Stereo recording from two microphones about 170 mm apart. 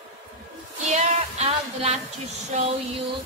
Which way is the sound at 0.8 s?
40° right (ahead or behind).